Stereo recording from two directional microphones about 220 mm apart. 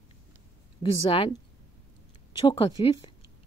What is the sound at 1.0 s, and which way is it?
Speech, 25° left (ahead or behind).